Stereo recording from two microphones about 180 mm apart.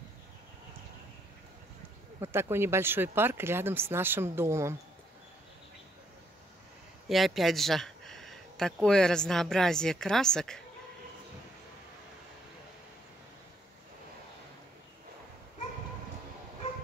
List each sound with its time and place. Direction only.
2.1 s speech: 15° right (ahead or behind)
7.1 s speech: centre (ahead or behind)